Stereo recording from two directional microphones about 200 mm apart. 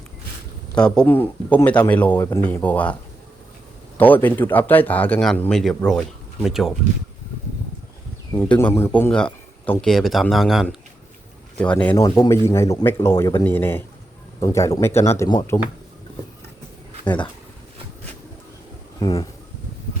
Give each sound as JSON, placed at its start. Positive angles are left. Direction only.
{"t": 0.8, "sound": "speech", "side_deg": 5}
{"t": 3.9, "sound": "speech", "side_deg": 10}
{"t": 8.4, "sound": "a man's voice", "side_deg": 10}
{"t": 18.9, "sound": "speech", "side_deg": 20}